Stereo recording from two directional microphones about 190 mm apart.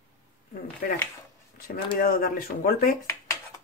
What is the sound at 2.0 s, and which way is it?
Speech, 50° left (ahead or behind).